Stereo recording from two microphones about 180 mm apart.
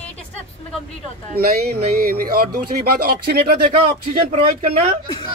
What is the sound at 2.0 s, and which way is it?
Speech, 55° right (ahead or behind).